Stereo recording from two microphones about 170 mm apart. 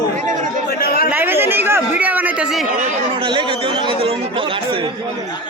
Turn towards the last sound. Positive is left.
turn(degrees=-30)  # may be behind; listen again after turning